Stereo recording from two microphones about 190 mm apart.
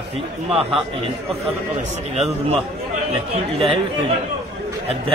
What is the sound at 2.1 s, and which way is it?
Speech, 35° right (ahead or behind).